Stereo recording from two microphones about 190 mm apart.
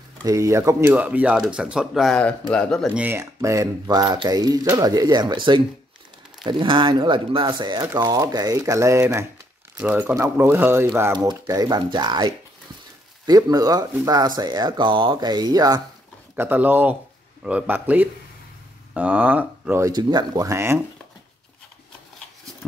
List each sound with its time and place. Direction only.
0.2 s speech: 15° right (ahead or behind)
13.3 s speech: 20° right (ahead or behind)